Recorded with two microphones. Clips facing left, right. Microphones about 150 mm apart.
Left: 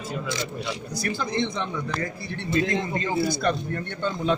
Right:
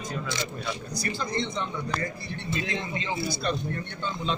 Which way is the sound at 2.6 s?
50° left (ahead or behind).